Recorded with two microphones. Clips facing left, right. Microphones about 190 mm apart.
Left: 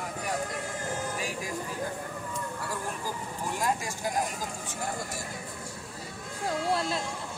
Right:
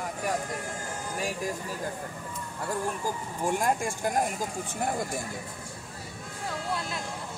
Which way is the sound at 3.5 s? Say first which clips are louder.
Right 4 dB; 50° right (ahead or behind).